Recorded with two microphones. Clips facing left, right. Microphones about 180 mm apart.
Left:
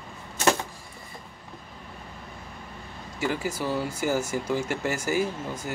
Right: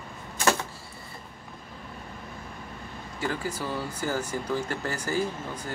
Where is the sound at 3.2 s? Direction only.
10° left (ahead or behind).